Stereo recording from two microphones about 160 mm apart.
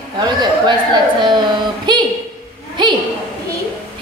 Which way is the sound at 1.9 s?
30° right (ahead or behind).